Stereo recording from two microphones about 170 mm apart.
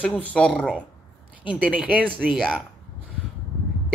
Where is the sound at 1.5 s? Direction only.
5° right (ahead or behind).